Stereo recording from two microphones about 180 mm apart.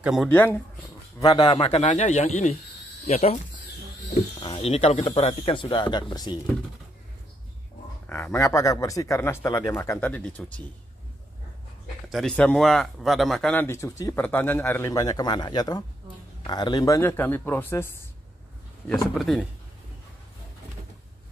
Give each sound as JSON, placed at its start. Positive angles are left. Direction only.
{"t": 0.0, "sound": "speech", "side_deg": 0}
{"t": 0.3, "sound": "speech", "side_deg": 10}
{"t": 1.2, "sound": "a man's voice", "side_deg": 25}
{"t": 8.1, "sound": "speech", "side_deg": 10}
{"t": 12.1, "sound": "speech", "side_deg": 0}
{"t": 19.1, "sound": "speech", "side_deg": 0}